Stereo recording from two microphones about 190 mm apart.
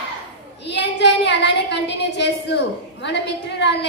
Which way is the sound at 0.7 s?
65° left (ahead or behind).